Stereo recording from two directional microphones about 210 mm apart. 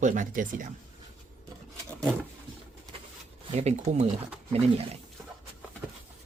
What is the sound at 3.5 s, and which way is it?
Speech, 30° right (ahead or behind).